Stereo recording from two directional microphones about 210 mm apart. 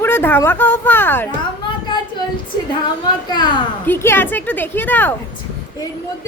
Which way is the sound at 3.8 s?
10° left (ahead or behind).